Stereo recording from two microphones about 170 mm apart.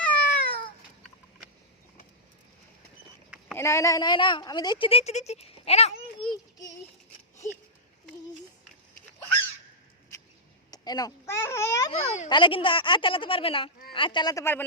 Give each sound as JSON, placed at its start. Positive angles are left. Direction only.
{"t": 0.0, "sound": "cat", "side_deg": 10}
{"t": 3.5, "sound": "a woman's voice", "side_deg": 15}
{"t": 6.3, "sound": "a sound", "side_deg": 20}
{"t": 10.7, "sound": "a sound", "side_deg": 20}
{"t": 11.9, "sound": "speech", "side_deg": 40}
{"t": 12.3, "sound": "a woman's voice", "side_deg": 30}